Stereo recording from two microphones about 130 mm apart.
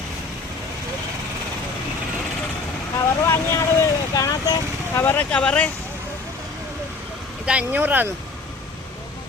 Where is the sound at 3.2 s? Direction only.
20° left (ahead or behind).